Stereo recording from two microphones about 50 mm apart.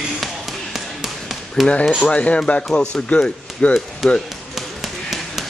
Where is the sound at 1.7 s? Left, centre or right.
Left.